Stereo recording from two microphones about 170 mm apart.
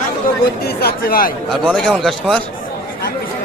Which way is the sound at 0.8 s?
60° left (ahead or behind).